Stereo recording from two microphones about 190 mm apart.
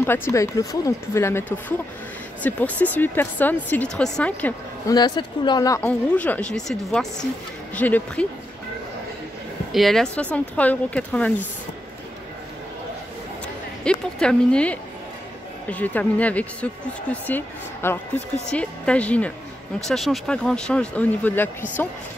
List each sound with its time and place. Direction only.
0.0 s speech: 10° left (ahead or behind)
4.8 s speech: 20° left (ahead or behind)
5.9 s speech: 5° left (ahead or behind)
9.7 s speech: centre (ahead or behind)
13.8 s speech: 5° left (ahead or behind)